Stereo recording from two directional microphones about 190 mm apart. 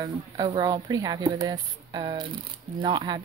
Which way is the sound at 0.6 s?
20° right (ahead or behind).